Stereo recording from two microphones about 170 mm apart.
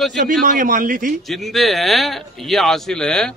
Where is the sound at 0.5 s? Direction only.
50° right (ahead or behind).